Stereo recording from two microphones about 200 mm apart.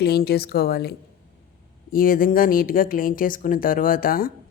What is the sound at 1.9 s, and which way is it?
Speech, 45° left (ahead or behind).